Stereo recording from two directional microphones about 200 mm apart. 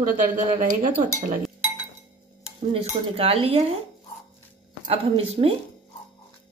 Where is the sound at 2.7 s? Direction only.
30° right (ahead or behind).